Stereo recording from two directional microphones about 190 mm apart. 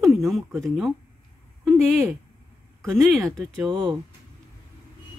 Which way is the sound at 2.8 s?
Centre (ahead or behind).